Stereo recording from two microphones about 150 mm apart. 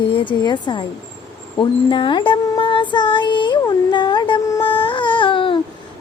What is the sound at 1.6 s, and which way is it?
Child singing, 35° left (ahead or behind).